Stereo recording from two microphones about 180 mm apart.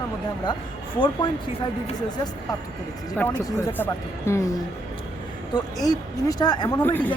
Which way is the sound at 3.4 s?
10° left (ahead or behind).